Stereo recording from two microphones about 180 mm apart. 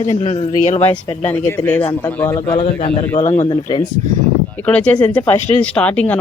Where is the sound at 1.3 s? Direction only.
10° left (ahead or behind).